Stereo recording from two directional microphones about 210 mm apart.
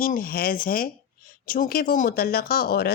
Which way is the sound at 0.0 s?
40° left (ahead or behind).